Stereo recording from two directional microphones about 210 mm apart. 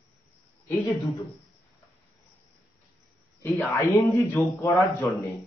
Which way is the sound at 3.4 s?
15° left (ahead or behind).